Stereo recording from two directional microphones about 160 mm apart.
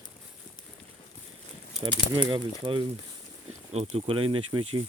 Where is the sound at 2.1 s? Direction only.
30° right (ahead or behind).